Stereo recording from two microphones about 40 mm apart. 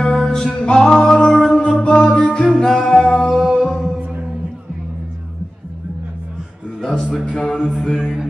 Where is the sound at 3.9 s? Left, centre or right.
Right.